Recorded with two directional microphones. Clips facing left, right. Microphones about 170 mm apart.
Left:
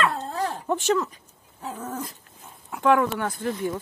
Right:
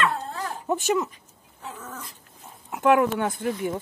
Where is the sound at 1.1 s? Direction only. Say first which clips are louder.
Left 1 dB; 35° left (ahead or behind).